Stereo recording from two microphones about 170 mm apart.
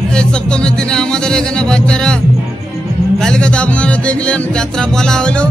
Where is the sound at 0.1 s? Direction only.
5° left (ahead or behind).